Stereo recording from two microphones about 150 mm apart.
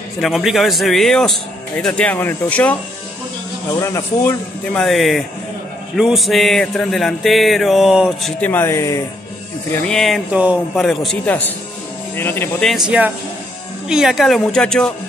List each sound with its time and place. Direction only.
0.2 s mantra: centre (ahead or behind)
1.8 s speech: 5° left (ahead or behind)
3.8 s speech: 20° left (ahead or behind)
4.7 s mantra: centre (ahead or behind)
8.4 s speech: 15° left (ahead or behind)
9.8 s mantra: 5° left (ahead or behind)
10.3 s speech: 10° right (ahead or behind)
10.7 s mantra: centre (ahead or behind)
12.2 s speech: 15° left (ahead or behind)
12.6 s mantra: 5° right (ahead or behind)